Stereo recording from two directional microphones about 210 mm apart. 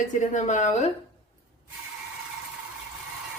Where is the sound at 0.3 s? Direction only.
35° left (ahead or behind).